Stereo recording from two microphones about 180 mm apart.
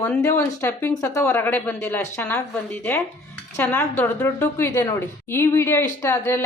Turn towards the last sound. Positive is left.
turn(degrees=15)  # may be behind; listen again after turning